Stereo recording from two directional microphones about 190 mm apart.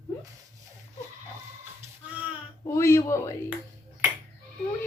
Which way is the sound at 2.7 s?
15° left (ahead or behind).